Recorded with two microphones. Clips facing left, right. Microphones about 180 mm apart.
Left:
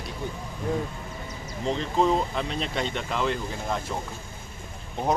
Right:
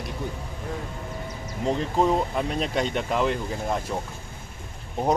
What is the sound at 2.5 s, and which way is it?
Speech, 45° right (ahead or behind).